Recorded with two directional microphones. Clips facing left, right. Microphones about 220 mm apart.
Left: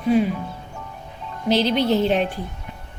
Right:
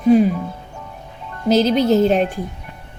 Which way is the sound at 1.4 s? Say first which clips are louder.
Right 4 dB; 45° right (ahead or behind).